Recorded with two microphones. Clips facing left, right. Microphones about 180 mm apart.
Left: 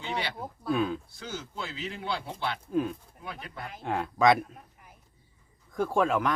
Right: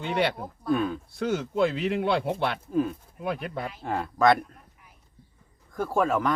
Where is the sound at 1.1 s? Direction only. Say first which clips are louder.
Right 12 dB; 60° right (ahead or behind).